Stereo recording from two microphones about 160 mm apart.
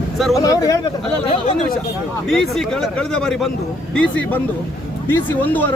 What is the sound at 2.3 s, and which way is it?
Speech, 5° left (ahead or behind).